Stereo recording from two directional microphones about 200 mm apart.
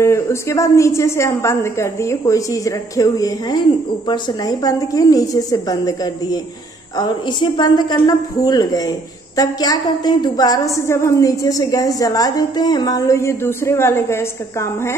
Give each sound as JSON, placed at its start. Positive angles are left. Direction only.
{"t": 0.0, "sound": "a woman's voice", "side_deg": 15}